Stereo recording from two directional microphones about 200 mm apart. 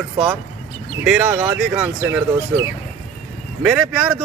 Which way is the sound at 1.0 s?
5° right (ahead or behind).